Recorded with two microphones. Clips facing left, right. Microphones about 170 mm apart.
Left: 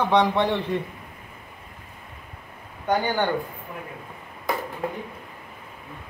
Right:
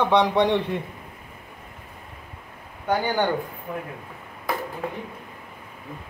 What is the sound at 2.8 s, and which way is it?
Speech, 10° right (ahead or behind).